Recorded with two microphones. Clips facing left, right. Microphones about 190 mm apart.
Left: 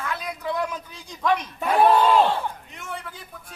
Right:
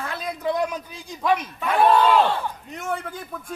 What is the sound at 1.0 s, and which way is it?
Speech, 5° right (ahead or behind).